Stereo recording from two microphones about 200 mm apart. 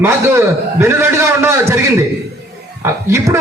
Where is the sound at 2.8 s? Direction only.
15° right (ahead or behind).